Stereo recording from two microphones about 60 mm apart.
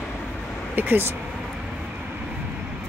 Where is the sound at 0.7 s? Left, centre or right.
Right.